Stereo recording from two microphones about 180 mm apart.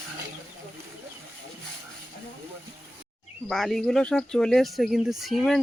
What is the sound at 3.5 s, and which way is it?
Speech, centre (ahead or behind).